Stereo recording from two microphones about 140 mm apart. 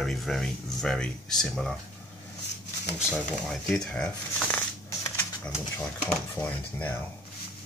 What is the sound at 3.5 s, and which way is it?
Speech, 5° left (ahead or behind).